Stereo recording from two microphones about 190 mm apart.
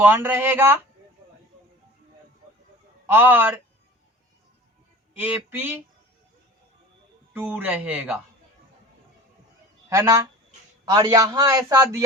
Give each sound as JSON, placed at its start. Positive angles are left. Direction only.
{"t": 0.0, "sound": "a man's voice", "side_deg": -10}
{"t": 3.1, "sound": "a man's voice", "side_deg": -10}
{"t": 5.2, "sound": "a man's voice", "side_deg": -10}
{"t": 7.3, "sound": "a man's voice", "side_deg": -10}
{"t": 9.9, "sound": "a man's voice", "side_deg": -15}